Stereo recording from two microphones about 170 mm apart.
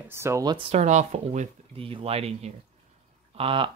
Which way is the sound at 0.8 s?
45° right (ahead or behind).